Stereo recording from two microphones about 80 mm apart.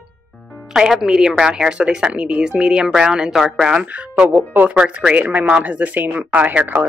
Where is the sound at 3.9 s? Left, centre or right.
Centre.